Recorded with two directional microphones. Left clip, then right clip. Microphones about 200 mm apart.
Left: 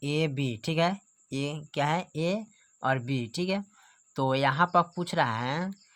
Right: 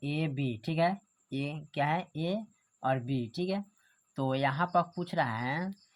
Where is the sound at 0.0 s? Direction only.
30° left (ahead or behind).